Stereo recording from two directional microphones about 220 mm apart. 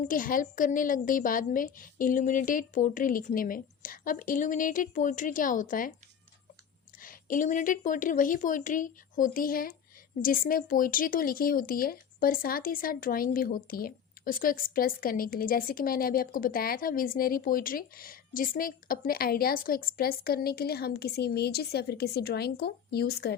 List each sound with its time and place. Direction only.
0.0 s speech: 40° left (ahead or behind)
7.0 s speech: 40° left (ahead or behind)